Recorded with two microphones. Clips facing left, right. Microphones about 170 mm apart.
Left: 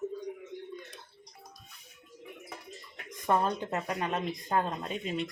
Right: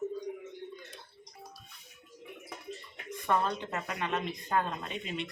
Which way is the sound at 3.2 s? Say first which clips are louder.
Left 2 dB; 40° left (ahead or behind).